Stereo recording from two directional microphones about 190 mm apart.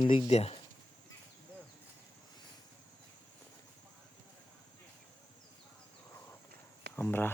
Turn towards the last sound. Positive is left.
turn(degrees=10)  # may be behind; listen again after turning